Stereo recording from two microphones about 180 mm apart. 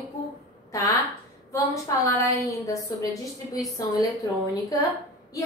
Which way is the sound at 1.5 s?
15° left (ahead or behind).